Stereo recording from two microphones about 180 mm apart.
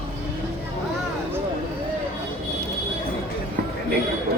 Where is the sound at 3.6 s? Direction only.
60° right (ahead or behind).